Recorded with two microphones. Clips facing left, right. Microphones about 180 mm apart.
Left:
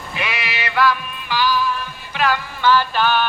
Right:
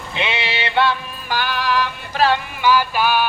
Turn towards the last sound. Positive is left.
turn(degrees=-10)  # may be behind; listen again after turning